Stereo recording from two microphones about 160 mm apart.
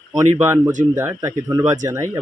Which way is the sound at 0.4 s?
15° right (ahead or behind).